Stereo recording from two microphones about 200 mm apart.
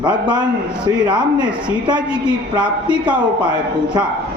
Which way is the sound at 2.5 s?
5° right (ahead or behind).